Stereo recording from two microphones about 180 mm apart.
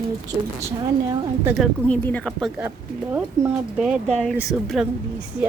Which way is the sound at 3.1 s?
5° right (ahead or behind).